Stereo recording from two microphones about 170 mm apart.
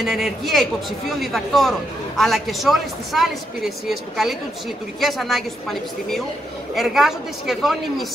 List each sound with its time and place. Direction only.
0.0 s a man's voice: centre (ahead or behind)